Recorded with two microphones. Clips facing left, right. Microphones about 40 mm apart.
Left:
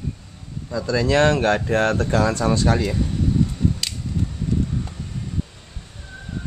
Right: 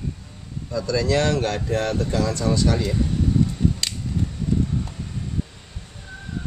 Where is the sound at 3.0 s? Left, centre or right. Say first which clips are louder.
Even; centre.